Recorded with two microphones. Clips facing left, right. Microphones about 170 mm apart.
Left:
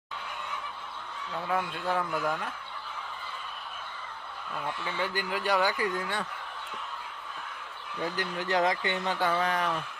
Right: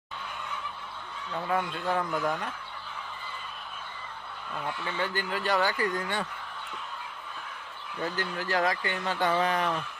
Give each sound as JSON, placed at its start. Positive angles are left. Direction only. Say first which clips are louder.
{"t": 1.3, "sound": "speech", "louder": "right 1 dB", "side_deg": 0}
{"t": 4.9, "sound": "speech", "louder": "right 1 dB", "side_deg": 10}
{"t": 8.0, "sound": "speech", "louder": "even", "side_deg": 15}
{"t": 9.1, "sound": "speech", "louder": "right 4 dB", "side_deg": 5}